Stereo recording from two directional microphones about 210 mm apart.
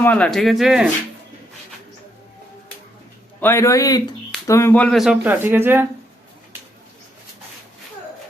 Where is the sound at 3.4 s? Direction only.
15° left (ahead or behind); by 5.9 s 10° right (ahead or behind).